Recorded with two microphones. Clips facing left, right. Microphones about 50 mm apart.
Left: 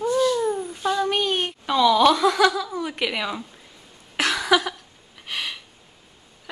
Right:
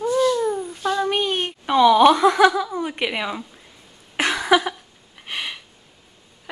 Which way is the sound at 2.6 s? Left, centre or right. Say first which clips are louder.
Right 2 dB; centre.